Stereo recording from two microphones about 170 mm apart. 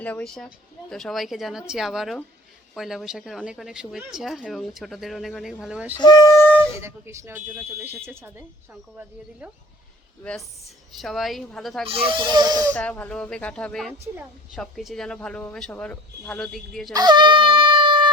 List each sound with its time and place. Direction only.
0.0 s speech: 5° left (ahead or behind)
6.0 s speech: 25° left (ahead or behind)
6.7 s speech: 15° right (ahead or behind)
11.0 s speech: centre (ahead or behind)
11.9 s speech: 30° right (ahead or behind)
12.7 s speech: 10° left (ahead or behind)
16.9 s a sound: 25° right (ahead or behind)